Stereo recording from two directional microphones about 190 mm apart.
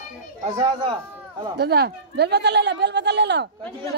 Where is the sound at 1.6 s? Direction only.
60° right (ahead or behind).